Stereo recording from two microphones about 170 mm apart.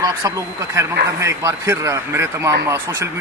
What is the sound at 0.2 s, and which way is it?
A man's voice, 20° right (ahead or behind).